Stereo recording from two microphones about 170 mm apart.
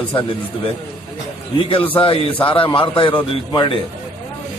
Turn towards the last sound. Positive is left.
turn(degrees=30)  # may be behind; listen again after turning